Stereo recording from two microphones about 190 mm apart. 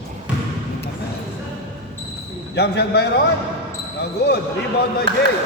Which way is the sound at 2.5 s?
60° left (ahead or behind).